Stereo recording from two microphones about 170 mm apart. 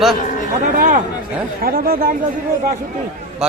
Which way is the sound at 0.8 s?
50° right (ahead or behind).